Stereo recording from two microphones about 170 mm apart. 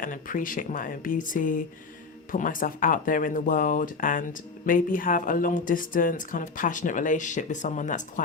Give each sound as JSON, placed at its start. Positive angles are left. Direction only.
{"t": 0.0, "sound": "speech", "side_deg": 55}